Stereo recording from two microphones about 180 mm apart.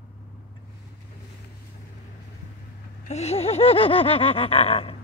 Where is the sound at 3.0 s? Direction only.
35° left (ahead or behind).